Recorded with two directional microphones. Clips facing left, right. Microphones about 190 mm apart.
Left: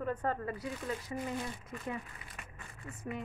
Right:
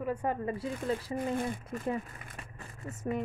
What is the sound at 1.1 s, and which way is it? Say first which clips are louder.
Speech: right 6 dB; 55° right (ahead or behind).